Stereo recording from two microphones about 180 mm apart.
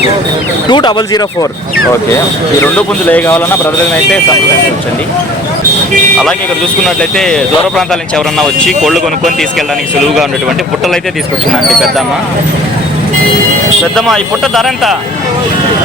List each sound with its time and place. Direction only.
0.7 s speech: 25° left (ahead or behind)
2.1 s speech: 10° left (ahead or behind)
6.8 s speech: centre (ahead or behind)
11.7 s speech: centre (ahead or behind)
13.9 s speech: centre (ahead or behind)